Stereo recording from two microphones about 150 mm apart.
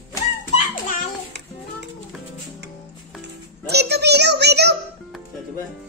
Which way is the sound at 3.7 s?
90° right.